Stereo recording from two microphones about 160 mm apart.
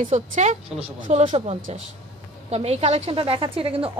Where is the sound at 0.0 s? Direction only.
50° right (ahead or behind).